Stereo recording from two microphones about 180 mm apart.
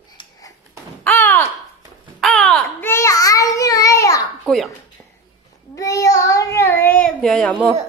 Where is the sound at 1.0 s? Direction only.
10° left (ahead or behind).